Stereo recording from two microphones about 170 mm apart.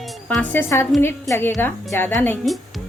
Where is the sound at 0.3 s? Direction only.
5° left (ahead or behind).